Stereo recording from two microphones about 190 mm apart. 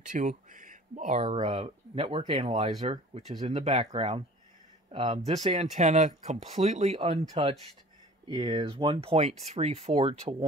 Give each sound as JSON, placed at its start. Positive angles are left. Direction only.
{"t": 0.0, "sound": "speech", "side_deg": -40}
{"t": 1.5, "sound": "speech", "side_deg": -25}
{"t": 2.8, "sound": "speech", "side_deg": -35}